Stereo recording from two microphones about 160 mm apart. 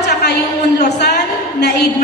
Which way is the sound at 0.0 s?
90° left.